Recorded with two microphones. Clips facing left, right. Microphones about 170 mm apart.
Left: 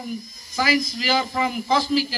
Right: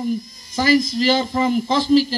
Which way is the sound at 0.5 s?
25° right (ahead or behind).